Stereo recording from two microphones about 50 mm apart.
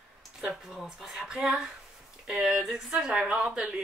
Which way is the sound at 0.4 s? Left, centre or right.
Centre.